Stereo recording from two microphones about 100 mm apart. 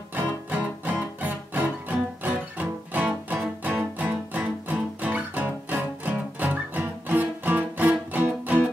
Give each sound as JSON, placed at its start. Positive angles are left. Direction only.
{"t": 0.1, "sound": "music", "side_deg": -15}